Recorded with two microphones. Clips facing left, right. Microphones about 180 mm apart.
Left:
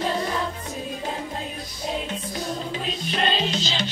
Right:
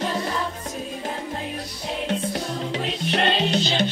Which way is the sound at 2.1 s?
70° right (ahead or behind).